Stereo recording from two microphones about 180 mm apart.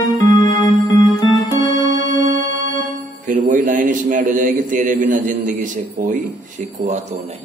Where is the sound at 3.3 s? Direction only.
45° right (ahead or behind).